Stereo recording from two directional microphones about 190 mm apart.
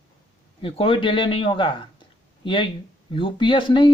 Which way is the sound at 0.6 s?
30° left (ahead or behind).